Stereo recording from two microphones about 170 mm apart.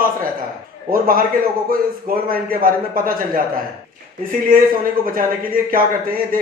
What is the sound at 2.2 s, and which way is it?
Speech, 60° right (ahead or behind).